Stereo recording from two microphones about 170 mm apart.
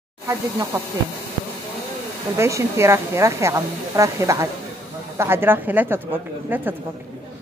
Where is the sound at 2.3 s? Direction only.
15° right (ahead or behind).